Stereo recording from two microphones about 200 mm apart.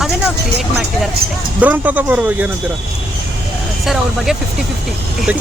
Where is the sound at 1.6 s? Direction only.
10° right (ahead or behind).